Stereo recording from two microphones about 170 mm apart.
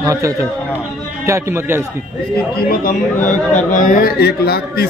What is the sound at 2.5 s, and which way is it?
A man's voice, 55° left (ahead or behind).